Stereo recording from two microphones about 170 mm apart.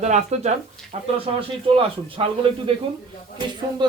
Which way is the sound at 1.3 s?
35° right (ahead or behind).